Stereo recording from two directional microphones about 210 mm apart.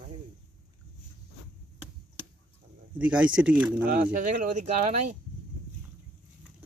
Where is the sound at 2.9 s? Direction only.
5° right (ahead or behind).